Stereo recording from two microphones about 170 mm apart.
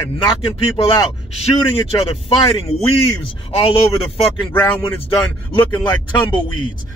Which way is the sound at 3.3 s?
30° left (ahead or behind).